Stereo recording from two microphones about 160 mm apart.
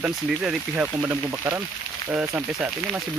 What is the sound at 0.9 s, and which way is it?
Speech, 15° right (ahead or behind).